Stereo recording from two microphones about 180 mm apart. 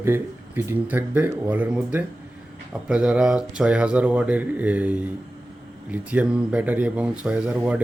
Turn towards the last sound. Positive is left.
turn(degrees=-5)  # may be behind; listen again after turning